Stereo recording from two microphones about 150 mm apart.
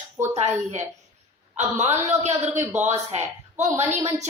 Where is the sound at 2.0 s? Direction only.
50° right (ahead or behind).